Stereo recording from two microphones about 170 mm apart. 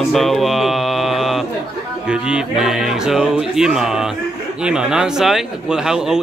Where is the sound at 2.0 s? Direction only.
5° right (ahead or behind).